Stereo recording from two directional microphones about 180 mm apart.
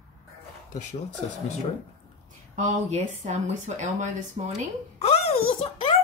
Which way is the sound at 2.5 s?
40° right (ahead or behind).